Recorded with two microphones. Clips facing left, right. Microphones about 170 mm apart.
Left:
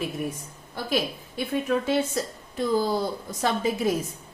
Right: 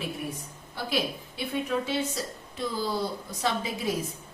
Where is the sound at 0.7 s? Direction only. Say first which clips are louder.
Left 3 dB; 45° left (ahead or behind).